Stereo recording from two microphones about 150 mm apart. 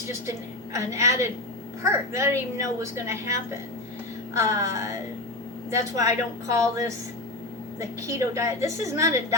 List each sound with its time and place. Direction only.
0.1 s a woman's voice: 20° right (ahead or behind)